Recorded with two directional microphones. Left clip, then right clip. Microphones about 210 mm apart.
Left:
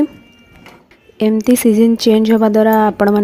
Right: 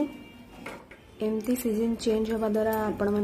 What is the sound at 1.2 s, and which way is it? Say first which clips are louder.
Speech: left 16 dB; 40° left (ahead or behind).